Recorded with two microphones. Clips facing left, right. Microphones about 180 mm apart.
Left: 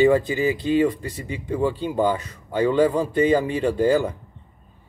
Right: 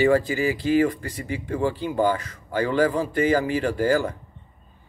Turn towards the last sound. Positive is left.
turn(degrees=20)  # may be behind; listen again after turning